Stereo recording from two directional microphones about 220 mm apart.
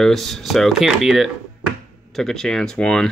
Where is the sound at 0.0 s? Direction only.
Centre (ahead or behind).